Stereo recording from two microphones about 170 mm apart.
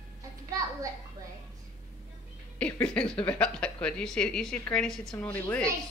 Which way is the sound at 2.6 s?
5° left (ahead or behind).